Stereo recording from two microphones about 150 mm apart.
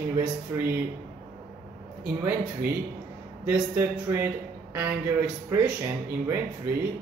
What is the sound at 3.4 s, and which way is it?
A man's voice, 15° right (ahead or behind).